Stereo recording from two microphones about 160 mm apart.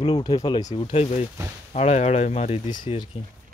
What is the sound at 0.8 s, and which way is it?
Speech, 35° left (ahead or behind).